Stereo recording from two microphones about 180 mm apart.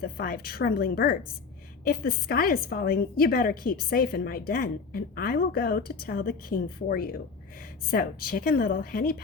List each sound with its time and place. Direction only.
0.0 s a woman's voice: 55° left (ahead or behind)